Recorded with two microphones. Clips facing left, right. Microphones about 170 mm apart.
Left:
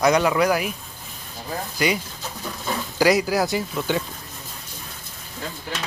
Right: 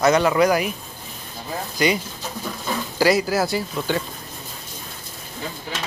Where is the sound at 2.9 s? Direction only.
15° left (ahead or behind).